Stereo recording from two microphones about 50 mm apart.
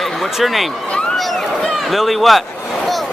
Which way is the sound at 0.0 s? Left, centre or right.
Centre.